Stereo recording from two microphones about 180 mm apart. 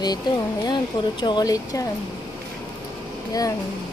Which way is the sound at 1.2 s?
25° left (ahead or behind).